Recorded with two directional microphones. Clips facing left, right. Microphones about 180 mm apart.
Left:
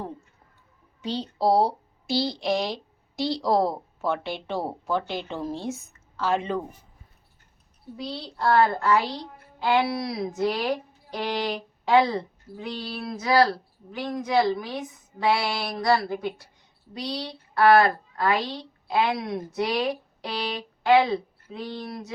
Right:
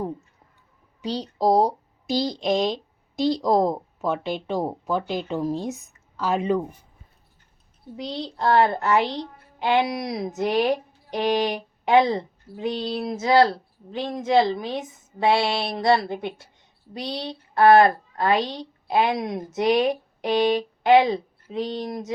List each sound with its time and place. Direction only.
1.0 s speech: 15° right (ahead or behind)
7.9 s speech: 20° right (ahead or behind)